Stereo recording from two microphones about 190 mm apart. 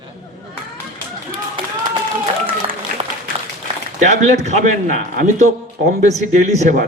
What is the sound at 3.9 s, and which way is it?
Speech, 40° right (ahead or behind).